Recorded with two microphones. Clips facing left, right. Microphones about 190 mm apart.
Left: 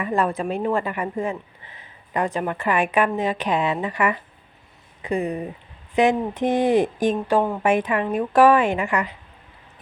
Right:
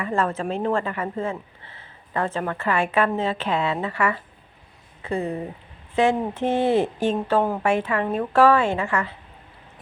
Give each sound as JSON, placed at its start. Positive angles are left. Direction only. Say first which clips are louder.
{"t": 0.0, "sound": "a woman's voice", "louder": "left 2 dB", "side_deg": 15}